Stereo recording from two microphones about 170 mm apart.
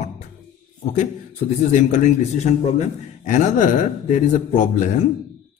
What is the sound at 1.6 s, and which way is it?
A man's voice, 45° left (ahead or behind).